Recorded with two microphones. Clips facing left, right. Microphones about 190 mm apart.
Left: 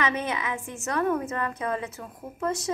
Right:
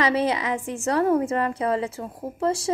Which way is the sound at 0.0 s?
35° right (ahead or behind).